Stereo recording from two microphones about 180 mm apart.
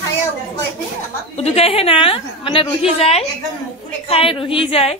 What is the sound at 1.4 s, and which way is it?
A woman's voice, 35° left (ahead or behind).